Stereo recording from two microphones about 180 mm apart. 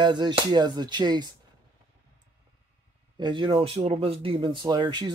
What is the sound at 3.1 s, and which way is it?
Speech, 25° right (ahead or behind).